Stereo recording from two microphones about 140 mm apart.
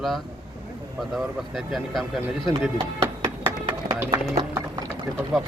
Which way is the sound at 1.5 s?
Centre (ahead or behind).